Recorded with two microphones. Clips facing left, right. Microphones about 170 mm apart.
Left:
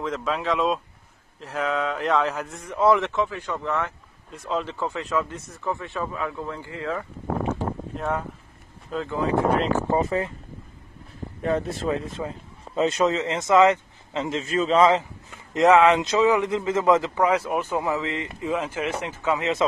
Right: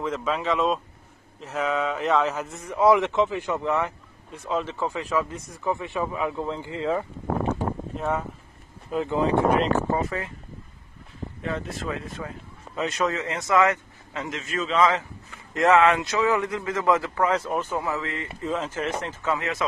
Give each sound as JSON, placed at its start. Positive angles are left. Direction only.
{"t": 0.0, "sound": "speech", "side_deg": 0}
{"t": 4.3, "sound": "speech", "side_deg": 0}
{"t": 7.9, "sound": "speech", "side_deg": 0}
{"t": 8.9, "sound": "speech", "side_deg": -20}
{"t": 9.9, "sound": "speech", "side_deg": 30}
{"t": 11.4, "sound": "speech", "side_deg": 35}
{"t": 15.5, "sound": "speech", "side_deg": 15}